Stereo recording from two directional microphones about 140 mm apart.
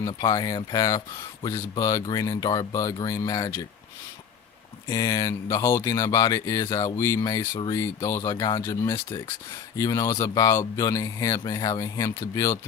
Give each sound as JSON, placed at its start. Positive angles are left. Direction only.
{"t": 0.1, "sound": "speech", "side_deg": 30}
{"t": 4.9, "sound": "speech", "side_deg": 25}